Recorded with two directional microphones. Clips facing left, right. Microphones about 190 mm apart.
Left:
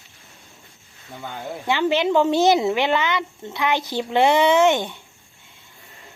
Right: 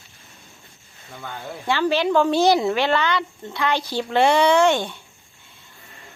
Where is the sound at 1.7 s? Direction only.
20° left (ahead or behind).